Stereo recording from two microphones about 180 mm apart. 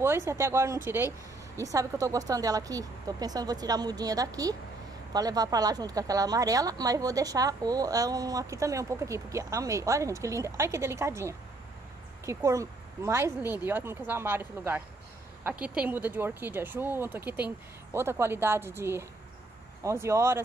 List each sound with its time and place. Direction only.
0.0 s a woman's voice: 15° right (ahead or behind)